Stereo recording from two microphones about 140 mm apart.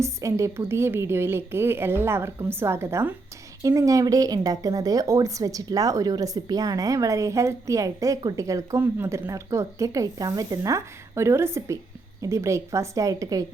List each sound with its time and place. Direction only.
0.0 s a woman's voice: 20° right (ahead or behind)